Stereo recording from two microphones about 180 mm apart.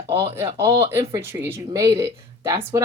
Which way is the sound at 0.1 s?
30° right (ahead or behind).